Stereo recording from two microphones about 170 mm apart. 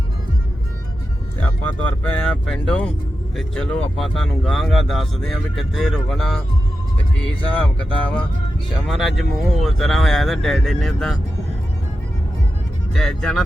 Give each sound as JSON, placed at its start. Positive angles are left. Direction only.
{"t": 1.4, "sound": "speech", "side_deg": 10}
{"t": 7.6, "sound": "speech", "side_deg": 5}
{"t": 12.9, "sound": "speech", "side_deg": 5}